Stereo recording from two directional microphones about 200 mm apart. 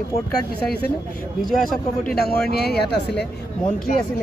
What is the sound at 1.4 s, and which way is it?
Speech, centre (ahead or behind).